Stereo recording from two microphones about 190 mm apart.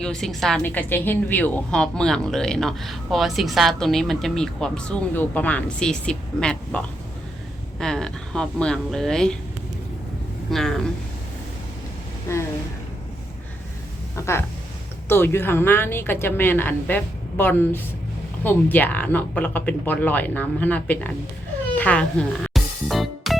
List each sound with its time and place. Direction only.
0.0 s a woman's voice: centre (ahead or behind)
10.5 s a woman's voice: centre (ahead or behind)
12.3 s a woman's voice: 15° left (ahead or behind)
14.2 s a sound: 15° left (ahead or behind)
15.1 s a woman's voice: 10° left (ahead or behind)
21.8 s music: 5° left (ahead or behind)